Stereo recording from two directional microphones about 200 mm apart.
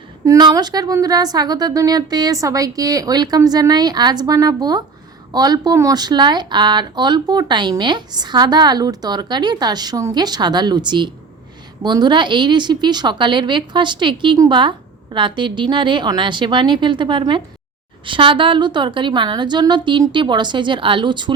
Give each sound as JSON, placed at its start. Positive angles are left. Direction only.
{"t": 0.3, "sound": "speech", "side_deg": -20}